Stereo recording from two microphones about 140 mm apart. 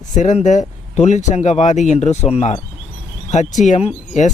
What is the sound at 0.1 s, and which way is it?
Speech, 60° left (ahead or behind).